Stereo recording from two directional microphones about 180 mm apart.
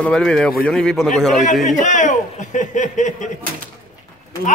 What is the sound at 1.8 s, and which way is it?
Speech, 45° left (ahead or behind).